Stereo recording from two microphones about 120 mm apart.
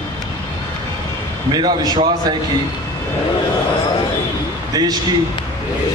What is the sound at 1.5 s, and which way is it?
Speech, 35° right (ahead or behind).